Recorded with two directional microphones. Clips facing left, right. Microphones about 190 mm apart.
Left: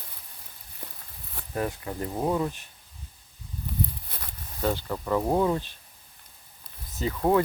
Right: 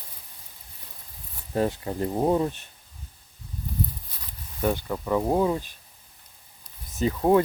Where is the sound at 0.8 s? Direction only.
55° left (ahead or behind).